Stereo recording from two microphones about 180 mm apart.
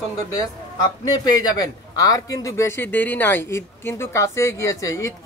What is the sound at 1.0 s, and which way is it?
A man's voice, 20° left (ahead or behind).